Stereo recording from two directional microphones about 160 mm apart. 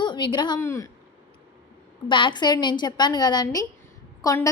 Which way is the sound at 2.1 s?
30° left (ahead or behind).